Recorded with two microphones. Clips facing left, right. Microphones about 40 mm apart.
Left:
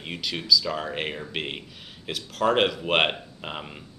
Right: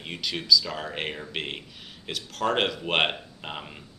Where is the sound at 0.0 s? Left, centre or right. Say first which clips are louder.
Left 1 dB; centre.